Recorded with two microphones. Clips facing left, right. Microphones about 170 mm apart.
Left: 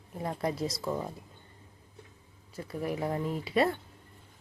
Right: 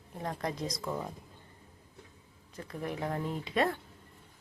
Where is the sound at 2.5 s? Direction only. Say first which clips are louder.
Left 4 dB; 5° left (ahead or behind).